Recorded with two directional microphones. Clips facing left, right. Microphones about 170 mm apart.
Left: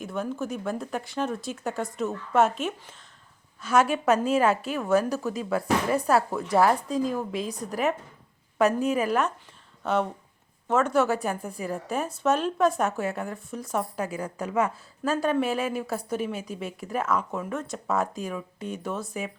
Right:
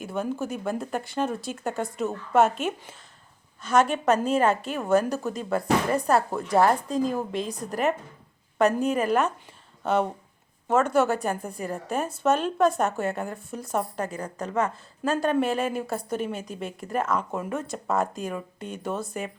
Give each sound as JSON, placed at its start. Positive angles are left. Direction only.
{"t": 0.0, "sound": "speech", "side_deg": 0}